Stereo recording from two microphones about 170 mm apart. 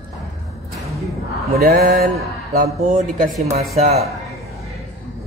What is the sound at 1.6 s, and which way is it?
Speech, 60° right (ahead or behind).